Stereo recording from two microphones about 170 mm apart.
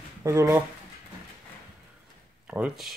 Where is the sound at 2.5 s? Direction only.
5° right (ahead or behind).